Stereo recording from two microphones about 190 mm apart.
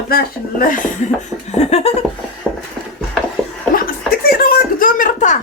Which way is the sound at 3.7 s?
50° left (ahead or behind).